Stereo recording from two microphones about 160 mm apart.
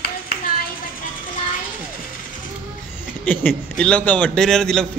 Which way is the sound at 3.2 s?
10° left (ahead or behind).